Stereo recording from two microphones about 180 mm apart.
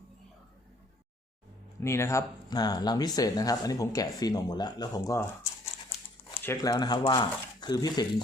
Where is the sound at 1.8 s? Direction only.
15° left (ahead or behind).